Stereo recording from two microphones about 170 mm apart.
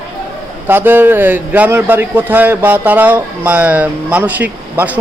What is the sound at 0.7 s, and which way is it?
A man's voice, 10° right (ahead or behind).